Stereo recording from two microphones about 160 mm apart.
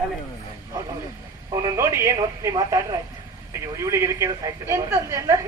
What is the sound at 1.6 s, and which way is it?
A woman's voice, 20° right (ahead or behind).